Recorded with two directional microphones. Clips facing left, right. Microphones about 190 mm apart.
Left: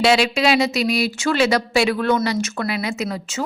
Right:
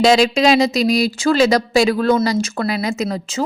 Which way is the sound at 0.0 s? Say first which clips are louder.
Right 4 dB; 40° right (ahead or behind).